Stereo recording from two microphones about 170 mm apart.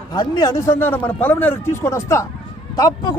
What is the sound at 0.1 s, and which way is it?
A man's voice, 25° left (ahead or behind).